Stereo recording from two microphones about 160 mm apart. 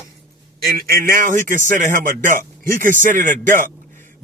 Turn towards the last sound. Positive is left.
turn(degrees=-55)  # may be behind; listen again after turning